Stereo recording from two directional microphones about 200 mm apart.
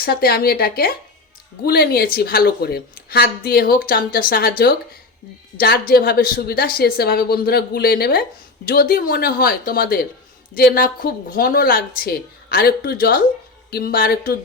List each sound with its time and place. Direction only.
0.0 s a woman's voice: 50° left (ahead or behind)